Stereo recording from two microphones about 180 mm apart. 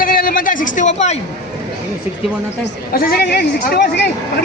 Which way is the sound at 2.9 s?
55° left (ahead or behind).